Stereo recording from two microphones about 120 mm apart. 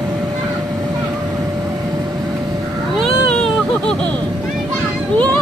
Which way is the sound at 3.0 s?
5° left (ahead or behind).